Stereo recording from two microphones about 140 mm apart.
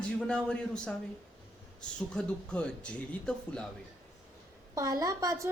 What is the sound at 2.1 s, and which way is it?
Speech, 5° left (ahead or behind).